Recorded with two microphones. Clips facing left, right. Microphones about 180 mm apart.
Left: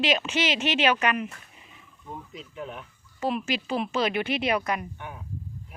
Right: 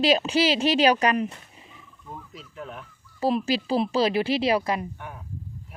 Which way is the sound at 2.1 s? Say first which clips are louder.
Left 1 dB; centre (ahead or behind).